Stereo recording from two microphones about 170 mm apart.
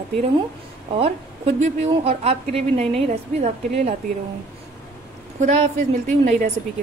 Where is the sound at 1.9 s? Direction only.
35° right (ahead or behind).